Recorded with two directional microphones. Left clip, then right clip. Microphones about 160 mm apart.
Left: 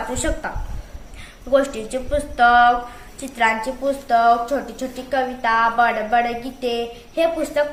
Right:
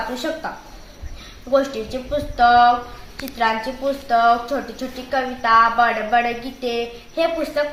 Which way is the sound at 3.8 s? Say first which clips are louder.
Even; 10° left (ahead or behind).